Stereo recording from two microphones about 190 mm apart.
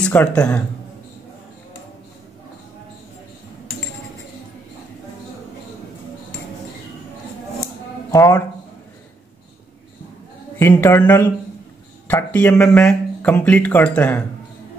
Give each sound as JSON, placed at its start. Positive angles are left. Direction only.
{"t": 0.0, "sound": "speech", "side_deg": 5}
{"t": 7.6, "sound": "a sound", "side_deg": 15}
{"t": 10.6, "sound": "a man's voice", "side_deg": 15}